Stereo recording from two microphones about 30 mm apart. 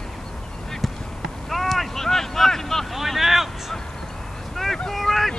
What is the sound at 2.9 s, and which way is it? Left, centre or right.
Vehicle, centre.